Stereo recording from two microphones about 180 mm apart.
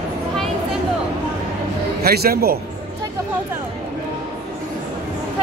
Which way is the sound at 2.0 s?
60° right (ahead or behind).